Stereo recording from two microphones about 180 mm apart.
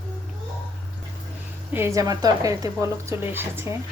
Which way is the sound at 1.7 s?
15° right (ahead or behind).